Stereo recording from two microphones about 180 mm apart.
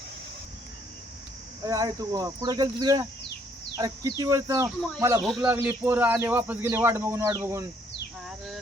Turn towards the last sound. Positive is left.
turn(degrees=-15)  # may be behind; listen again after turning